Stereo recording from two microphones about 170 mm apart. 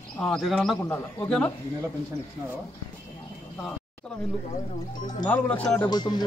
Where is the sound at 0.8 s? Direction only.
20° left (ahead or behind).